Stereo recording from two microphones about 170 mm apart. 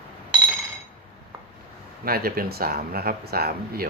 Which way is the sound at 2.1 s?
65° right (ahead or behind).